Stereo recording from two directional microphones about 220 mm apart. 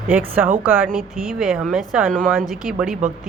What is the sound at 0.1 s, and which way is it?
A woman's voice, 10° right (ahead or behind).